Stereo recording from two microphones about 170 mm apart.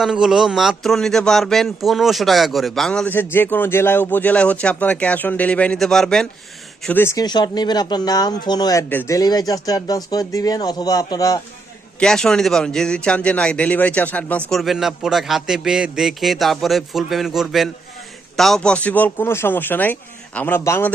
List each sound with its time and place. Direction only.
0.0 s speech: centre (ahead or behind); by 11.3 s 20° left (ahead or behind)
11.9 s speech: 5° left (ahead or behind)